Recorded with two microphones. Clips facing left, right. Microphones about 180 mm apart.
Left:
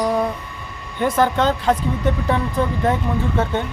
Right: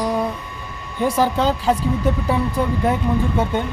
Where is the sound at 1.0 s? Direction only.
5° right (ahead or behind).